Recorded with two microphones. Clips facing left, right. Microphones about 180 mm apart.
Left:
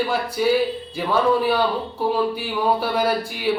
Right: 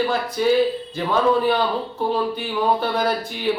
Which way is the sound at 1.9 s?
5° left (ahead or behind).